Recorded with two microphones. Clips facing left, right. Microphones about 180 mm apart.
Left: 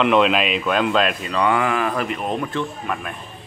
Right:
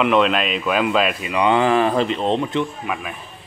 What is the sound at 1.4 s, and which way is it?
Speech, 25° right (ahead or behind).